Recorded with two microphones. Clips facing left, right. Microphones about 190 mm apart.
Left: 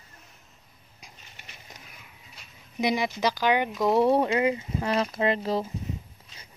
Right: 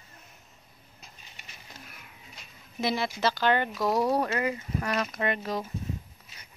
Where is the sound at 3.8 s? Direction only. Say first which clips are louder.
Left 7 dB; 25° left (ahead or behind).